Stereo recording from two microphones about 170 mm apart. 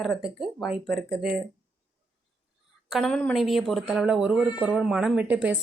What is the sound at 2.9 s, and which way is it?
A woman's voice, 5° left (ahead or behind).